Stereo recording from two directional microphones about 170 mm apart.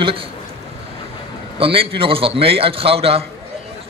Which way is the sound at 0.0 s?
30° right (ahead or behind).